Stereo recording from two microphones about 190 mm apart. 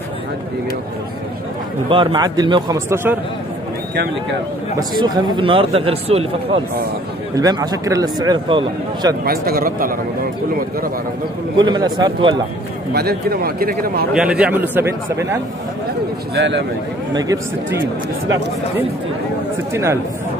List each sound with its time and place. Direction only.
1.9 s a man's voice: 25° right (ahead or behind)
2.9 s a man's voice: 10° right (ahead or behind)
4.7 s a man's voice: 20° right (ahead or behind)
7.3 s a man's voice: 20° right (ahead or behind)
9.2 s speech: 55° right (ahead or behind)
11.5 s a man's voice: 25° right (ahead or behind)
12.9 s speech: 55° right (ahead or behind)
14.1 s a man's voice: 5° right (ahead or behind)
16.3 s speech: 65° right (ahead or behind)
17.1 s a man's voice: 20° right (ahead or behind)
19.7 s a man's voice: 15° right (ahead or behind)